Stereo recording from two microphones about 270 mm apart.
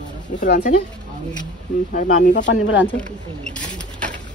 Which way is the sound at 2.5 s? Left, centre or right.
Left.